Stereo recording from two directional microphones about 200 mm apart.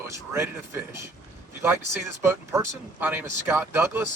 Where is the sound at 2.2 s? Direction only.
15° right (ahead or behind).